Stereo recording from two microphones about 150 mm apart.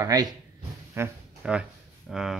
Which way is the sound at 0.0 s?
25° right (ahead or behind).